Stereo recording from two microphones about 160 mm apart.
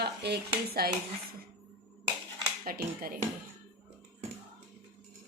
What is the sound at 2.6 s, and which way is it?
Speech, 65° right (ahead or behind).